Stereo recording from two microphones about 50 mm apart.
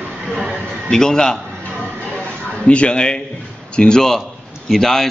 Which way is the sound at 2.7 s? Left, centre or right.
Left.